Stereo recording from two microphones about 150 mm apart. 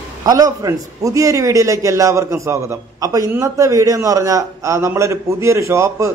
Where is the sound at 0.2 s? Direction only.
25° right (ahead or behind).